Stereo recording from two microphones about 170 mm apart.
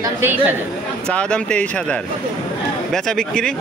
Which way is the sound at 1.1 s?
5° left (ahead or behind).